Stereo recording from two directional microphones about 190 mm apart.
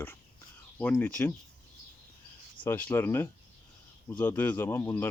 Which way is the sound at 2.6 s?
10° left (ahead or behind).